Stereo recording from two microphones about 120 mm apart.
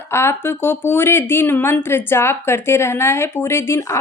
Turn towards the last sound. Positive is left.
turn(degrees=25)  # may be behind; listen again after turning